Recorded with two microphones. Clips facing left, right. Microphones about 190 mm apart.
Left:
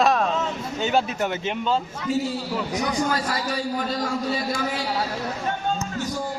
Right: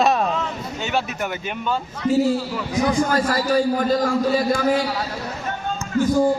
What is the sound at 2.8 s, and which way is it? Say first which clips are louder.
A man's voice: right 8 dB; 50° right (ahead or behind).